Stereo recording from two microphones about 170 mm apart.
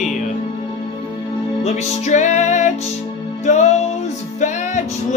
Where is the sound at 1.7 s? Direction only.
40° left (ahead or behind).